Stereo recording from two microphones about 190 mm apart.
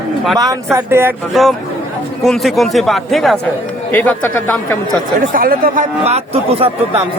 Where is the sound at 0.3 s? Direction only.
20° right (ahead or behind).